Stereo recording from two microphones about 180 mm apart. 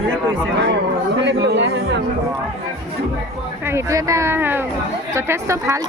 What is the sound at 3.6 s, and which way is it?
A woman's voice, 15° right (ahead or behind).